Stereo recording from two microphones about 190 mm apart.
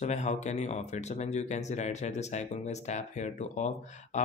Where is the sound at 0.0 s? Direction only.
35° left (ahead or behind).